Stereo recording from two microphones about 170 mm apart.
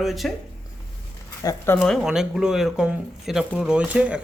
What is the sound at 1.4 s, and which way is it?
Speech, 15° left (ahead or behind).